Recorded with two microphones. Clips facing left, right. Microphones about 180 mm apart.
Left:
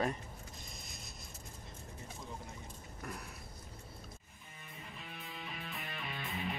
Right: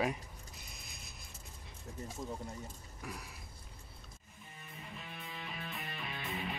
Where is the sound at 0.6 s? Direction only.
65° right (ahead or behind).